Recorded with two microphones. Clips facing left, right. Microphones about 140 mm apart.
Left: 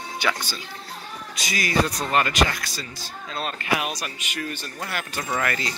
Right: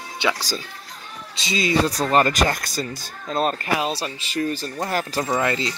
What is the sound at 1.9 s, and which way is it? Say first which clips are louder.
Speech: right 5 dB; 35° right (ahead or behind).